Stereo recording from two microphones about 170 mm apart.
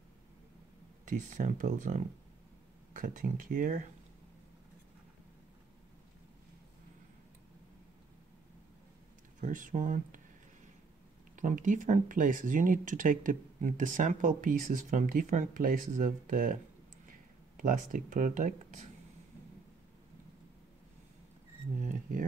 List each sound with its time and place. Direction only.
1.0 s speech: 50° right (ahead or behind)
9.4 s speech: 50° right (ahead or behind)
11.3 s speech: 50° right (ahead or behind)
21.7 s a sound: 50° right (ahead or behind)